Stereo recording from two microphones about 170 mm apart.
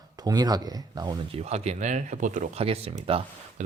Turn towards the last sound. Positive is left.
turn(degrees=-35)  # may be behind; listen again after turning